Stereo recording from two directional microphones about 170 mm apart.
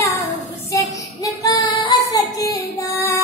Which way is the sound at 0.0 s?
20° left (ahead or behind).